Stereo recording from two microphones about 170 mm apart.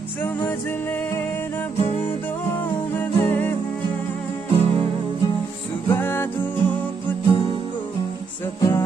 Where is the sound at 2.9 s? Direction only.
10° left (ahead or behind).